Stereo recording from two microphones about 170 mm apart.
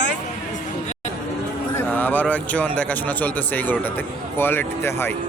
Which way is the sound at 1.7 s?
10° left (ahead or behind).